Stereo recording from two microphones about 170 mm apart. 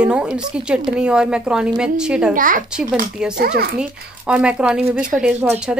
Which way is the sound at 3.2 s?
5° right (ahead or behind).